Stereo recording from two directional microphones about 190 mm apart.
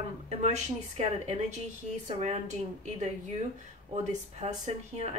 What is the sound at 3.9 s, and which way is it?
A woman's voice, 35° right (ahead or behind).